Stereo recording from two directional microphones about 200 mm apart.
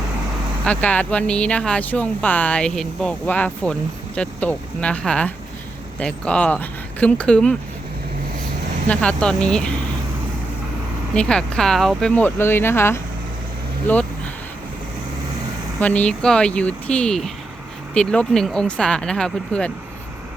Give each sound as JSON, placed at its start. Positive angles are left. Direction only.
{"t": 0.6, "sound": "speech", "side_deg": 5}
{"t": 8.9, "sound": "speech", "side_deg": 5}
{"t": 11.1, "sound": "speech", "side_deg": 5}
{"t": 15.8, "sound": "speech", "side_deg": 5}